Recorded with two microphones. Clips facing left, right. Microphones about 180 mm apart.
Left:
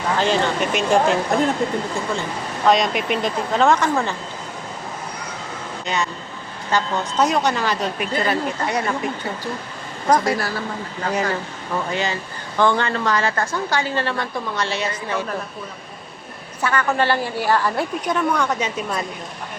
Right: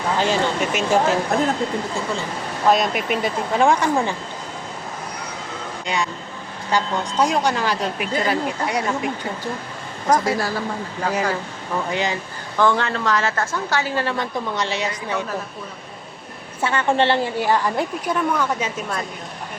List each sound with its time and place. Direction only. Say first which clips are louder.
0.2 s speech: left 1 dB; 5° right (ahead or behind)
2.6 s speech: left 1 dB; 5° right (ahead or behind)
5.8 s speech: even; 15° right (ahead or behind)
10.1 s speech: left 1 dB; 10° right (ahead or behind)
12.5 s a woman's voice: even; centre (ahead or behind)
16.6 s a woman's voice: right 1 dB; 25° right (ahead or behind); by 18.7 s 5° right (ahead or behind)